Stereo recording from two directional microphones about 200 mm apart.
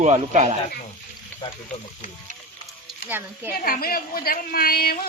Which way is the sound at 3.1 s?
10° right (ahead or behind).